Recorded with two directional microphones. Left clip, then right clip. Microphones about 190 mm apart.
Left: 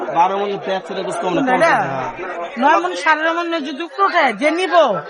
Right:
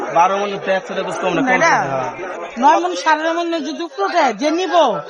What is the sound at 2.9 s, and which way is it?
Speech, 10° left (ahead or behind).